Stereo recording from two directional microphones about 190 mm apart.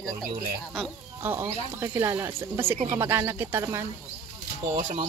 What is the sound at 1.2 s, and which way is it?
Speech, 10° right (ahead or behind).